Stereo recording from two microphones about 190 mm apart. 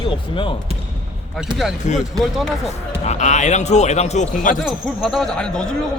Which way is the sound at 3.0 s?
35° left (ahead or behind).